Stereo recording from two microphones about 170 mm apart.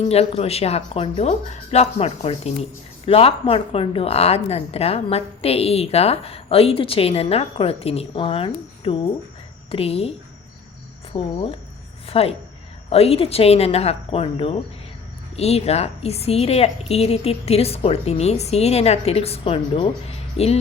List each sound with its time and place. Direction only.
0.0 s a woman's voice: 35° left (ahead or behind)